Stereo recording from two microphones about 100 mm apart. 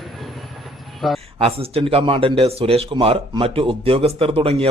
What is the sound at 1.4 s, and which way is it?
Speech, 70° right (ahead or behind).